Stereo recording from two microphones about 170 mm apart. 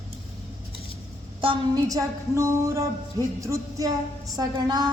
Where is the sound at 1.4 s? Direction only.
30° right (ahead or behind).